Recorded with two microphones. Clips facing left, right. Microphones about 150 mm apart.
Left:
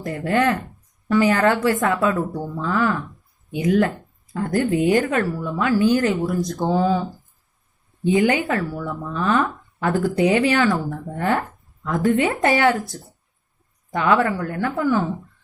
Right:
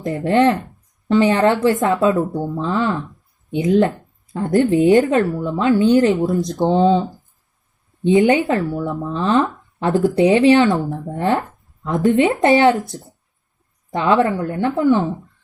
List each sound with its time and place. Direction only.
0.0 s speech: 25° right (ahead or behind)